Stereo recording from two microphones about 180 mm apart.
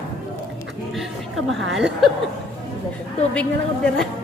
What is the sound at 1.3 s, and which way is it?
Speech, 90° right.